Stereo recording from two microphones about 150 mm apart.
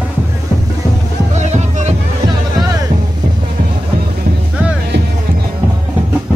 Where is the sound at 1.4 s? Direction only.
50° right (ahead or behind).